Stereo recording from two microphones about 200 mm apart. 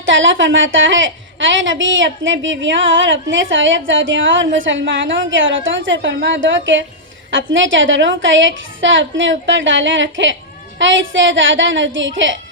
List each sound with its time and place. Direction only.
0.0 s a woman's voice: 70° right (ahead or behind)